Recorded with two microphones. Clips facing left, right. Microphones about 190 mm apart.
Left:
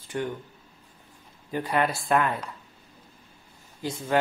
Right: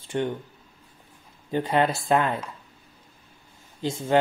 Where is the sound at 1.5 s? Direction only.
25° right (ahead or behind).